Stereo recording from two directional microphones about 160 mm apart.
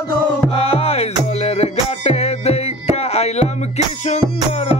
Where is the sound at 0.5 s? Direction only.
40° left (ahead or behind).